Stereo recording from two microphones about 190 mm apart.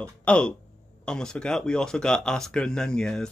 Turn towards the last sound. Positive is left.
turn(degrees=5)  # may be behind; listen again after turning